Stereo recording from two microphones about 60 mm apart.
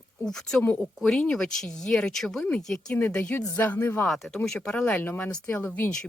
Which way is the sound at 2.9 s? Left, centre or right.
Centre.